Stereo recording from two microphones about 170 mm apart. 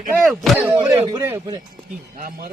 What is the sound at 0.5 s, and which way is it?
Speech, 10° right (ahead or behind).